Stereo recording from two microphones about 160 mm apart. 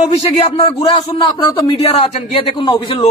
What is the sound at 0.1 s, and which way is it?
Speech, 45° left (ahead or behind).